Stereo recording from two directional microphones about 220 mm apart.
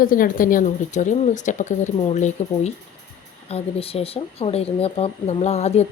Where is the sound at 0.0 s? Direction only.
40° left (ahead or behind).